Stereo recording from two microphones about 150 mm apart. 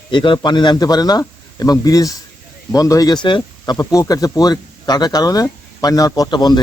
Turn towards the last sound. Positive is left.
turn(degrees=30)  # may be behind; listen again after turning